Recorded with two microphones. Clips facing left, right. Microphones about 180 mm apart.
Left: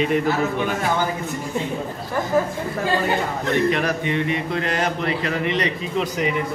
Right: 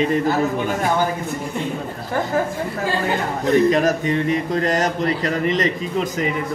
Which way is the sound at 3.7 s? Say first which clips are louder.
Right 4 dB; 40° right (ahead or behind).